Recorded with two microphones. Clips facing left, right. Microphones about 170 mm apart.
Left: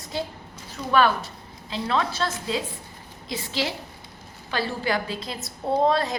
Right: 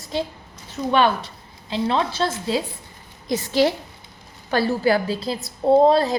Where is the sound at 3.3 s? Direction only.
45° right (ahead or behind).